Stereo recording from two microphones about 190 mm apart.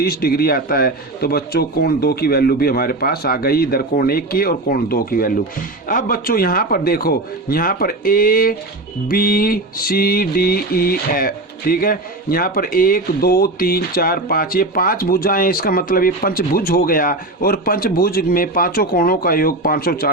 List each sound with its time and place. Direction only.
0.0 s mantra: 55° left (ahead or behind)